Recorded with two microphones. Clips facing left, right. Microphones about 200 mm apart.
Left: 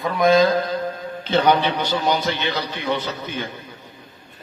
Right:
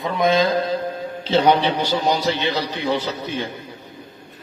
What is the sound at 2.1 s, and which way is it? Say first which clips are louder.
A man's voice: right 1 dB; 30° right (ahead or behind).